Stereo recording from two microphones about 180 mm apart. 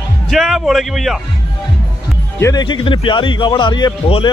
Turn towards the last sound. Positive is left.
turn(degrees=25)  # may be behind; listen again after turning